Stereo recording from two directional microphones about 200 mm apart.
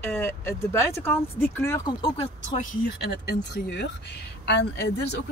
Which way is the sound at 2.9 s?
55° left (ahead or behind).